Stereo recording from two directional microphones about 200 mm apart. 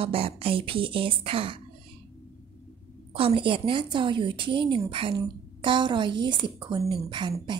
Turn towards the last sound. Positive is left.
turn(degrees=-20)  # may be behind; listen again after turning